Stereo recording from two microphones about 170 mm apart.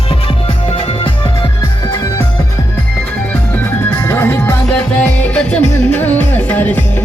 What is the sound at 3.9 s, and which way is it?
Music, 15° left (ahead or behind).